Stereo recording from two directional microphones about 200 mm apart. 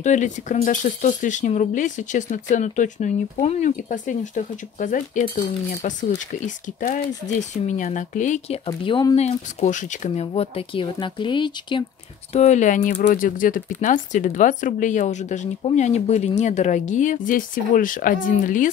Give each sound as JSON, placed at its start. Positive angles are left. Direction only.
{"t": 0.0, "sound": "speech", "side_deg": 35}
{"t": 8.6, "sound": "speech", "side_deg": 20}
{"t": 12.3, "sound": "speech", "side_deg": 35}